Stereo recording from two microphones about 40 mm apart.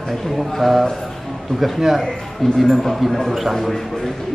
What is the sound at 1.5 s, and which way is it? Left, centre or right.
Speech, centre.